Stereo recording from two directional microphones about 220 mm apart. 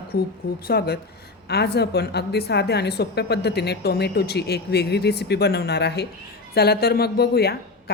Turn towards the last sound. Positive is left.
turn(degrees=45)  # may be behind; listen again after turning